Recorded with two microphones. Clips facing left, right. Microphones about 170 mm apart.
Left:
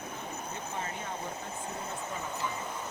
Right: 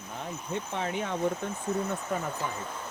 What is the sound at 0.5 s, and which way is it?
Speech, 80° right.